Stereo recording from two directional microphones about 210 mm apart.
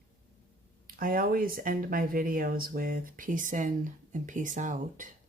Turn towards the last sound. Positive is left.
turn(degrees=-35)  # may be behind; listen again after turning